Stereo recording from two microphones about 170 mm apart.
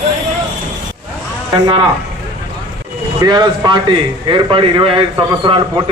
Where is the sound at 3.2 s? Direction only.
25° right (ahead or behind).